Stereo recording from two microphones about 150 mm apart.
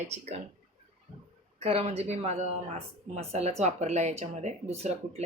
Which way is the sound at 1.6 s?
40° right (ahead or behind).